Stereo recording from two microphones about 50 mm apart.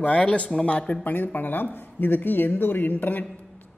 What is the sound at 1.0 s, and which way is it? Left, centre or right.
A woman's voice, left.